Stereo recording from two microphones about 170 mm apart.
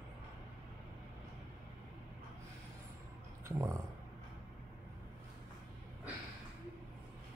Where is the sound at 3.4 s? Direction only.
15° right (ahead or behind).